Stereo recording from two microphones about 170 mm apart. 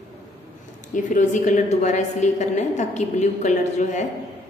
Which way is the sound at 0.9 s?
45° left (ahead or behind).